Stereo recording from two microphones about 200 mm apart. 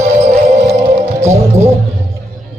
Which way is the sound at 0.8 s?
15° right (ahead or behind).